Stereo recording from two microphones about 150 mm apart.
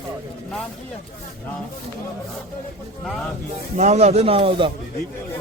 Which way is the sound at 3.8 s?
50° right (ahead or behind).